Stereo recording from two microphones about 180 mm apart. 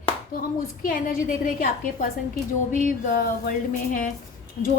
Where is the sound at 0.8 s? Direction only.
50° left (ahead or behind).